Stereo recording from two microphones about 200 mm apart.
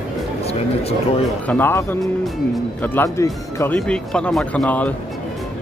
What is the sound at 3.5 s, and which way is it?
Music, 15° left (ahead or behind).